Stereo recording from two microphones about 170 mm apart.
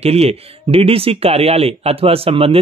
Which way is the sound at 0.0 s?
35° right (ahead or behind).